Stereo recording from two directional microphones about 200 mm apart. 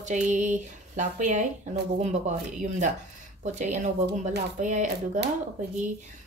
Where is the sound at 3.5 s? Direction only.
35° right (ahead or behind).